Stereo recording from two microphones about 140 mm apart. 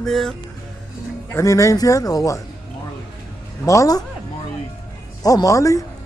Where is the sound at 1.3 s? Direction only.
20° left (ahead or behind).